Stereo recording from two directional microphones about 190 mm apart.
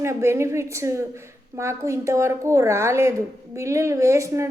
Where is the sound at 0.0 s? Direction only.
15° right (ahead or behind).